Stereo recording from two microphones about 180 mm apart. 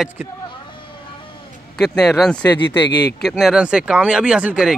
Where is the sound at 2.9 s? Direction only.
65° left (ahead or behind).